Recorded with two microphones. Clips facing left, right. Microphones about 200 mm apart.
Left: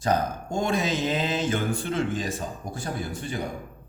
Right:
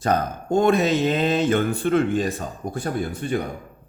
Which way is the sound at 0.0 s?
60° right (ahead or behind).